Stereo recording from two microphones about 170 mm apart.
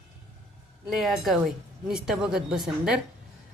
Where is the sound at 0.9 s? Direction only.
Centre (ahead or behind).